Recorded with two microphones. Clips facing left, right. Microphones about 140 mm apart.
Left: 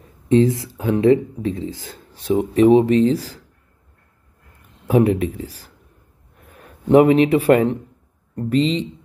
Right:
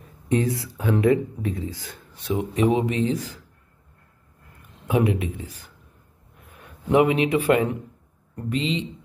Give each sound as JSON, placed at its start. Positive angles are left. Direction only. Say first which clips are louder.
{"t": 0.3, "sound": "speech", "louder": "left 8 dB", "side_deg": 25}
{"t": 4.8, "sound": "a man's voice", "louder": "left 6 dB", "side_deg": 35}